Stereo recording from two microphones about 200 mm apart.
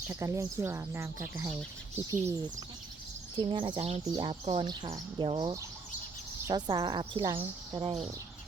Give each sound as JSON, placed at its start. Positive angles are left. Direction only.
{"t": 0.1, "sound": "speech", "side_deg": -15}